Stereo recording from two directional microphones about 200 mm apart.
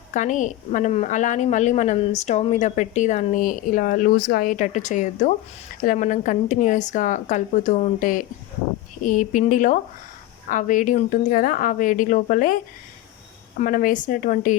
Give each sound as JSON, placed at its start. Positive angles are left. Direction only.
{"t": 0.1, "sound": "a woman's voice", "side_deg": 40}
{"t": 13.6, "sound": "a woman's voice", "side_deg": 45}